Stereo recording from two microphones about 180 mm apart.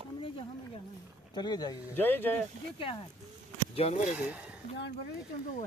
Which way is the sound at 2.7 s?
30° left (ahead or behind).